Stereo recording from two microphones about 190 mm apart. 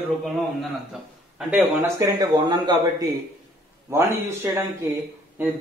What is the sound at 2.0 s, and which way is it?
Speech, 20° right (ahead or behind).